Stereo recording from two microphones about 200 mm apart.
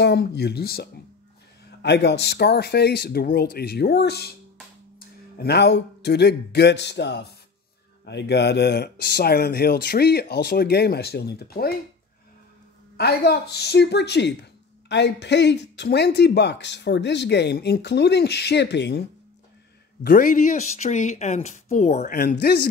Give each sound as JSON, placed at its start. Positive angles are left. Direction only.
{"t": 0.0, "sound": "speech", "side_deg": 55}
{"t": 12.9, "sound": "speech", "side_deg": 55}
{"t": 20.0, "sound": "speech", "side_deg": 45}